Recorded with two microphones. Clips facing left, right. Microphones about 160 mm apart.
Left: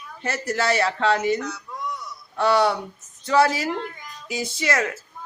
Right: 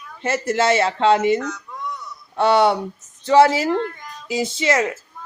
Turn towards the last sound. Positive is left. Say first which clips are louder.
# right 5 dB
turn(degrees=-20)  # may be behind; listen again after turning